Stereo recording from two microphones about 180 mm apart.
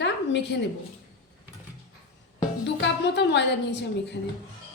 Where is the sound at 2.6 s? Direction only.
75° left (ahead or behind).